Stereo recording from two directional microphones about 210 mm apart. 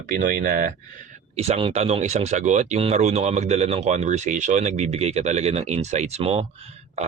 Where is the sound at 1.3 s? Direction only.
30° right (ahead or behind).